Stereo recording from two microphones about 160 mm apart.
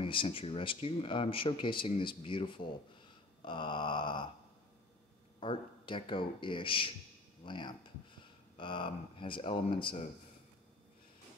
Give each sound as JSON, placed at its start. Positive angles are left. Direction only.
{"t": 0.0, "sound": "speech", "side_deg": 30}
{"t": 3.4, "sound": "a sound", "side_deg": 30}
{"t": 5.4, "sound": "speech", "side_deg": 30}